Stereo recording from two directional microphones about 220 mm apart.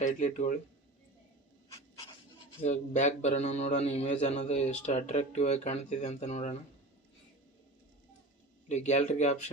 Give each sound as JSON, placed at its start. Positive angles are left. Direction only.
{"t": 0.0, "sound": "a man's voice", "side_deg": 35}
{"t": 2.6, "sound": "a man's voice", "side_deg": 30}
{"t": 8.7, "sound": "a man's voice", "side_deg": 30}